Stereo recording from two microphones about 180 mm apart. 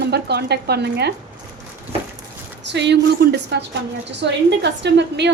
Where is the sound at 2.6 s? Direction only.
75° right (ahead or behind).